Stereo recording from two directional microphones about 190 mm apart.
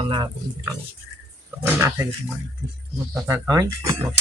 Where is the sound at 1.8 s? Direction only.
15° right (ahead or behind).